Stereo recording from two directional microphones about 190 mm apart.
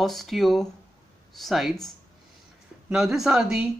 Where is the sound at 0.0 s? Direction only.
Centre (ahead or behind).